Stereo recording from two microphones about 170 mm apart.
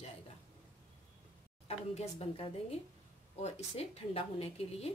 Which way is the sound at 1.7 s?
35° left (ahead or behind).